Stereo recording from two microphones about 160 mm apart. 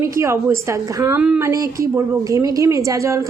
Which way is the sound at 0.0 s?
15° right (ahead or behind).